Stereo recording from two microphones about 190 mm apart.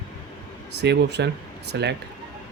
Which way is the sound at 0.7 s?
60° right (ahead or behind).